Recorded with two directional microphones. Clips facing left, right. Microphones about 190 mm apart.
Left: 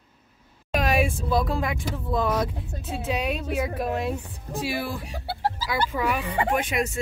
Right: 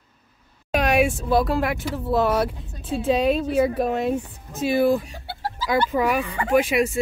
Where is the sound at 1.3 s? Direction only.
70° right (ahead or behind).